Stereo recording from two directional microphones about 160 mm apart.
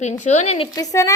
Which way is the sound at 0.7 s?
20° left (ahead or behind).